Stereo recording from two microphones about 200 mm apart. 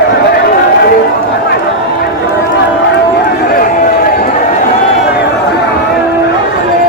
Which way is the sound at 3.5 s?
45° left (ahead or behind).